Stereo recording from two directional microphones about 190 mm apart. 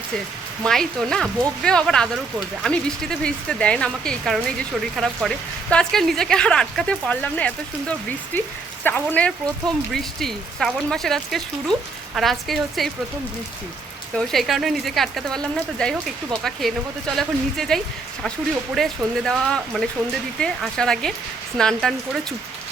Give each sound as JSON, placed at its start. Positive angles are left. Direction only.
{"t": 0.6, "sound": "speech", "side_deg": 5}
{"t": 14.2, "sound": "speech", "side_deg": 0}